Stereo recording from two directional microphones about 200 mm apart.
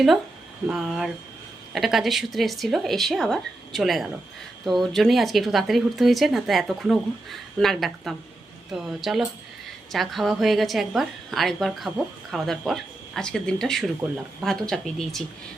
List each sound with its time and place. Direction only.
0.7 s a woman's voice: centre (ahead or behind)